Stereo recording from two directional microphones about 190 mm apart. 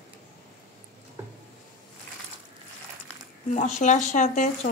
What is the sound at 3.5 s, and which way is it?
Speech, 40° left (ahead or behind).